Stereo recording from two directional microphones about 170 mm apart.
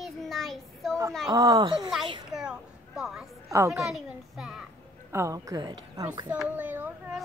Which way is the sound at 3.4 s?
15° right (ahead or behind).